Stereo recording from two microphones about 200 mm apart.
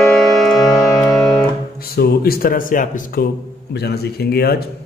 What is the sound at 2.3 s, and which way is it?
Speech, 45° left (ahead or behind).